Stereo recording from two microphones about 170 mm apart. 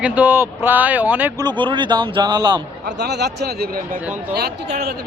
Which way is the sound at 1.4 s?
25° right (ahead or behind).